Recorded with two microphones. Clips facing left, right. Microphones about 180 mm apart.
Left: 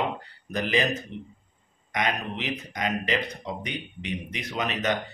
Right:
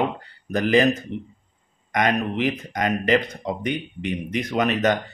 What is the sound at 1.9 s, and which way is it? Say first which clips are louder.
Speech: right 7 dB; 50° right (ahead or behind).